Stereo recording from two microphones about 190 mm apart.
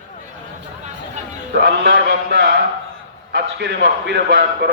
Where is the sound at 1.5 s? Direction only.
60° right (ahead or behind).